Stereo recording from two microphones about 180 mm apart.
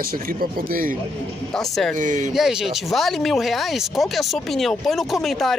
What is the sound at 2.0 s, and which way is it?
Speech, 45° right (ahead or behind).